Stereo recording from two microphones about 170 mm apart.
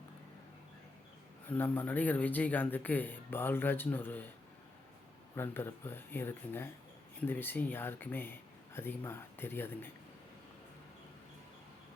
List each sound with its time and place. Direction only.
1.5 s speech: 10° left (ahead or behind)
5.3 s speech: 15° left (ahead or behind)